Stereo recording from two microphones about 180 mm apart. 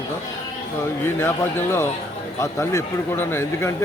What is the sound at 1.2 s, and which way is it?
Speech, 15° left (ahead or behind).